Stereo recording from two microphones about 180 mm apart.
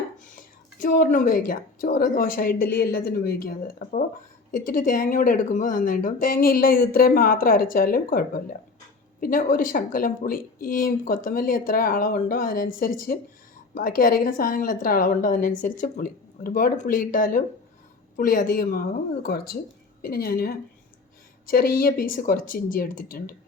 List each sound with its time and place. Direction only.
0.3 s a woman's voice: 50° left (ahead or behind)